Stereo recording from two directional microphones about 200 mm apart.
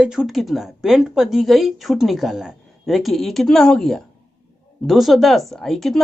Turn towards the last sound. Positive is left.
turn(degrees=0)  # may be behind; listen again after turning